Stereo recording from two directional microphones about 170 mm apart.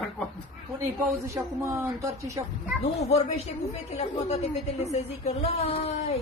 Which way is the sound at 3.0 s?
40° left (ahead or behind).